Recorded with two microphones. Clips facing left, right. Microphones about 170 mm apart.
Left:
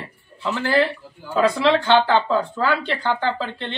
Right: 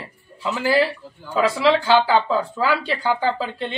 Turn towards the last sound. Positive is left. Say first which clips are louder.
# right 2 dB
turn(degrees=-10)  # may be behind; listen again after turning